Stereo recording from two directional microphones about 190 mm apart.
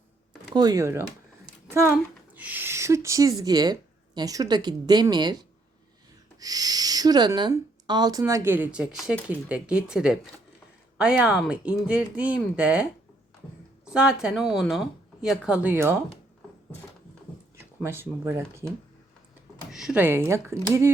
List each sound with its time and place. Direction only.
0.5 s speech: 20° right (ahead or behind)
17.8 s speech: 10° right (ahead or behind)
19.7 s speech: 5° right (ahead or behind)